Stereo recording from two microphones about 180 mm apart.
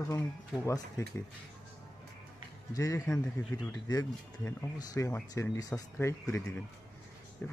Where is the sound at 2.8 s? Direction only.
20° left (ahead or behind).